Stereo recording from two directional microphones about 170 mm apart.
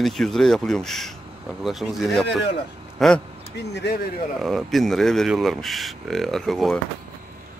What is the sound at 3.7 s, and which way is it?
Speech, 80° left.